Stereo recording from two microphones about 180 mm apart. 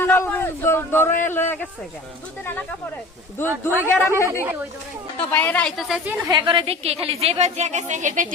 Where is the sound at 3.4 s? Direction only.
10° right (ahead or behind).